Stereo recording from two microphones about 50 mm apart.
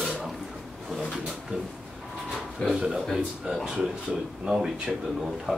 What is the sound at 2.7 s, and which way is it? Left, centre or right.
Speech, centre.